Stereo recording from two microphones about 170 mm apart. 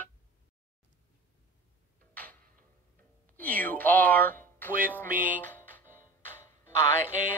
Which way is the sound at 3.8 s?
10° left (ahead or behind).